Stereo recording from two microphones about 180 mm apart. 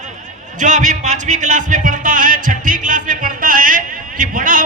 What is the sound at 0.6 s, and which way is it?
Speech, 45° right (ahead or behind).